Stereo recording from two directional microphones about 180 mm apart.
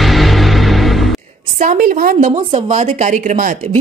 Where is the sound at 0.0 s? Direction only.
Centre (ahead or behind).